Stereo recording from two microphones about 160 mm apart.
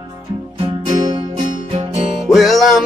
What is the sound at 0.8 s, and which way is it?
Music, 30° right (ahead or behind).